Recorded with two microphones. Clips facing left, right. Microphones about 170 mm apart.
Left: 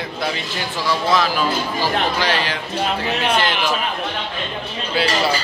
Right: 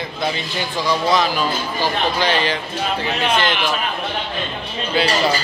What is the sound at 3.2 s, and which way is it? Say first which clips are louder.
Speech: right 1 dB; 10° left (ahead or behind).